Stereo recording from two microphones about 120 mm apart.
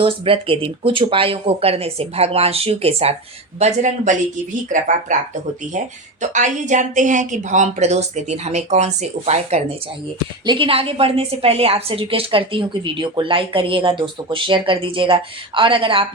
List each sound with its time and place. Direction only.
0.0 s speech: 50° right (ahead or behind)
3.6 s speech: 85° right
6.3 s a woman's voice: 90° right; by 9.7 s 60° right (ahead or behind)
10.4 s a woman's voice: 45° right (ahead or behind)